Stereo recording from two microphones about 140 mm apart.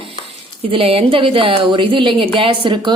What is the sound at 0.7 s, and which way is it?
A woman's voice, 45° right (ahead or behind).